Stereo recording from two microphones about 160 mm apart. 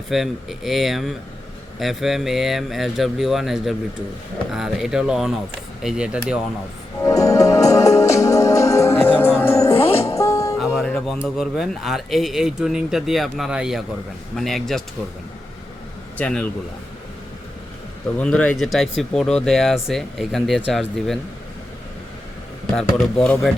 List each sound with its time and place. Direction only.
0.1 s speech: centre (ahead or behind)
7.0 s music: 20° left (ahead or behind)
10.8 s speech: centre (ahead or behind)
16.1 s a man's voice: 10° left (ahead or behind)
18.2 s speech: 5° left (ahead or behind)
23.2 s speech: 5° left (ahead or behind)